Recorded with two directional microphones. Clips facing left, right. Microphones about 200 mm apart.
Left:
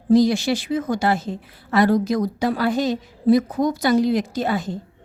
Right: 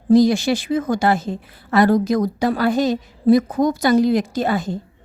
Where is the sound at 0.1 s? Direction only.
50° right (ahead or behind).